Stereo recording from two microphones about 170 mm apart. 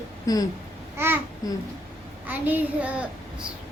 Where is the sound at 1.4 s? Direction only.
20° left (ahead or behind).